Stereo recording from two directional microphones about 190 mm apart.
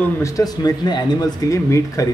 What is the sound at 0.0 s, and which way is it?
Speech, 15° left (ahead or behind).